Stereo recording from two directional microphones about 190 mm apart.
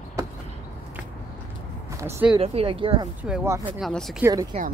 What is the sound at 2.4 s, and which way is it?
Speech, 30° right (ahead or behind).